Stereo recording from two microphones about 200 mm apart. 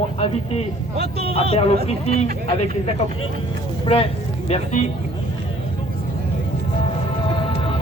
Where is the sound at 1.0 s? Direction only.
55° right (ahead or behind).